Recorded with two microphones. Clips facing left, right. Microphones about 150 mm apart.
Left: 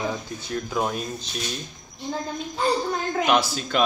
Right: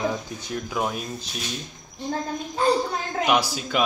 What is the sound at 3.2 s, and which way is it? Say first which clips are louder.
Speech: right 1 dB; 10° right (ahead or behind).